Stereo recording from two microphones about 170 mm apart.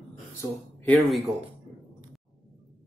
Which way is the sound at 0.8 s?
10° left (ahead or behind).